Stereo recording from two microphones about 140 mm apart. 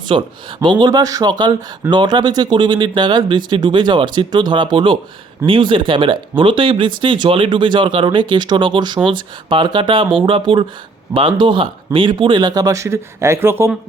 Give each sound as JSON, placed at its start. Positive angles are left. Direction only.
{"t": 0.1, "sound": "speech", "side_deg": -35}